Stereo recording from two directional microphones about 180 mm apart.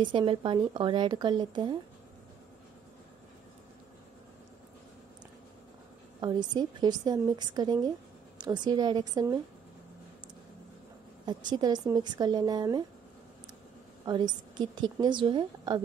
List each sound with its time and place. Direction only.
0.0 s a woman's voice: 25° right (ahead or behind)
6.2 s a woman's voice: 25° right (ahead or behind)
11.2 s a woman's voice: 25° right (ahead or behind)
14.0 s a woman's voice: 25° right (ahead or behind)